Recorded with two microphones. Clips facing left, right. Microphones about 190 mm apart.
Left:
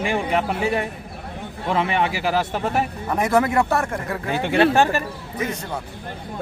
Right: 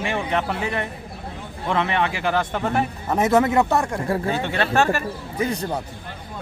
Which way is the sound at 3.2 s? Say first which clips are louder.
Right 1 dB; 20° right (ahead or behind).